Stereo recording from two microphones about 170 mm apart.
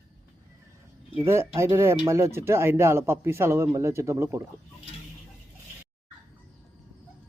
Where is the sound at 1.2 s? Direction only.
15° right (ahead or behind).